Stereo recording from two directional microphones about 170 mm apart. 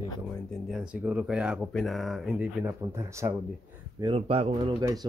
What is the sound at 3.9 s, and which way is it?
Speech, 30° right (ahead or behind).